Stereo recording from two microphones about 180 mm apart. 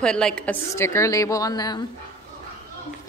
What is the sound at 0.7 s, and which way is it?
A woman's voice, 15° left (ahead or behind).